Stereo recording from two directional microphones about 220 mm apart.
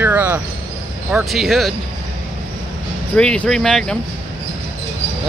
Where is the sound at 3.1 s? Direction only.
5° left (ahead or behind).